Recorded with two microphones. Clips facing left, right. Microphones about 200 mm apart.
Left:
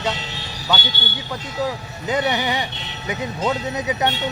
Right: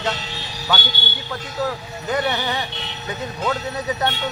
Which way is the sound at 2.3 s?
15° left (ahead or behind).